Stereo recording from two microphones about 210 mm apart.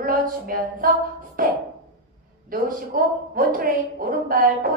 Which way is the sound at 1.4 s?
40° right (ahead or behind).